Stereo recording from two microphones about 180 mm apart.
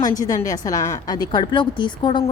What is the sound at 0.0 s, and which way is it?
A woman's voice, 20° left (ahead or behind).